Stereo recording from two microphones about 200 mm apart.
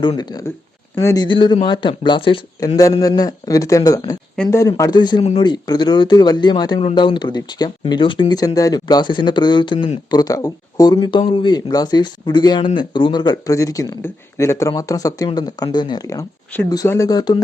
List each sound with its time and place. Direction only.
0.0 s speech: 20° left (ahead or behind)